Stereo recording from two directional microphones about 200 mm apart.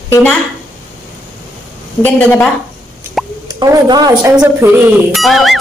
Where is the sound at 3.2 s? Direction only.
Centre (ahead or behind).